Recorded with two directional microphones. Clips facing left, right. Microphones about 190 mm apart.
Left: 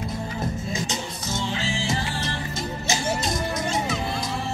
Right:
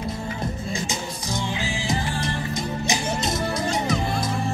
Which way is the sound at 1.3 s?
15° right (ahead or behind).